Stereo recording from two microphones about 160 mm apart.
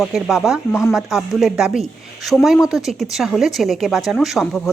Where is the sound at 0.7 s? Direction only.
15° left (ahead or behind).